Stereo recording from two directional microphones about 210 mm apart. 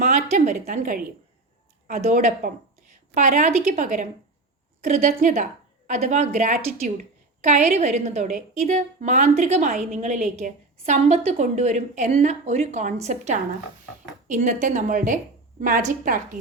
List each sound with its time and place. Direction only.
0.3 s a woman's voice: 40° right (ahead or behind)